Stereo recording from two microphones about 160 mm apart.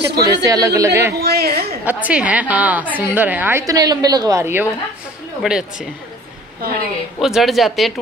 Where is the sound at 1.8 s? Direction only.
10° right (ahead or behind).